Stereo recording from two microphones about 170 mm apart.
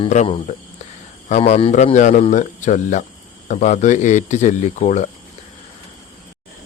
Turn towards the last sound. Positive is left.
turn(degrees=45)  # may be behind; listen again after turning